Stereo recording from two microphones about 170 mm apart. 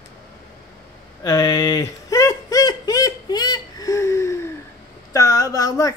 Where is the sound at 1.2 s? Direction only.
20° left (ahead or behind).